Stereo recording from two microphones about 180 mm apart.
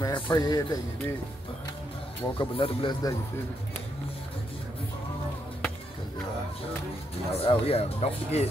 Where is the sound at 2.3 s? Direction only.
30° left (ahead or behind).